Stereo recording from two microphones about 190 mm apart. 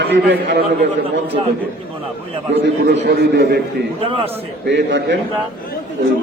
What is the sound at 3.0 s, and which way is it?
Speech, 55° right (ahead or behind).